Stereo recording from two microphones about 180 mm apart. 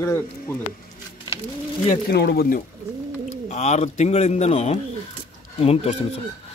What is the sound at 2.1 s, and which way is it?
Speech, 65° left (ahead or behind).